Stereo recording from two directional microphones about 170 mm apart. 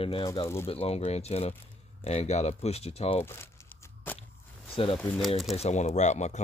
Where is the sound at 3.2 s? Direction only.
15° left (ahead or behind).